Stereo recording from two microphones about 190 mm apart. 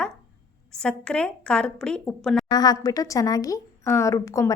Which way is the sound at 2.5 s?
20° left (ahead or behind).